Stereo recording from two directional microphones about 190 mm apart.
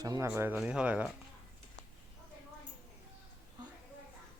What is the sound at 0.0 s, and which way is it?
Speech, 20° right (ahead or behind).